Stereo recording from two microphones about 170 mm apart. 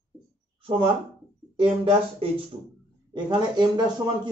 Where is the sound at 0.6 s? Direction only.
30° right (ahead or behind).